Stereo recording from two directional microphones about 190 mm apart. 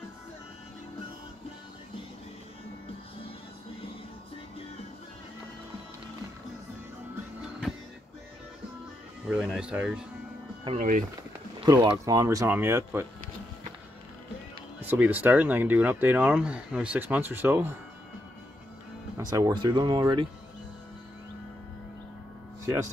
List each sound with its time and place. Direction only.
7.7 s music: 5° right (ahead or behind)
9.3 s speech: 5° right (ahead or behind)
10.8 s speech: 45° right (ahead or behind)
11.6 s speech: 20° right (ahead or behind)
14.8 s speech: 10° right (ahead or behind)
19.3 s speech: 20° right (ahead or behind)